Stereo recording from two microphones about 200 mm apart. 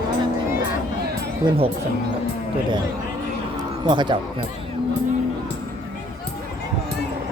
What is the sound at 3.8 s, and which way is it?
Speech, 25° right (ahead or behind).